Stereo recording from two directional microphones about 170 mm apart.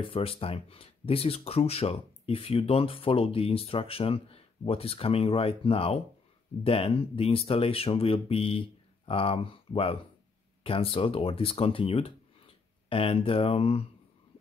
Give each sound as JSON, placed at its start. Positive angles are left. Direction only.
{"t": 0.1, "sound": "speech", "side_deg": 35}